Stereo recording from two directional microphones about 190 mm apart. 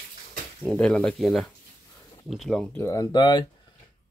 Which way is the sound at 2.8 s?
20° left (ahead or behind).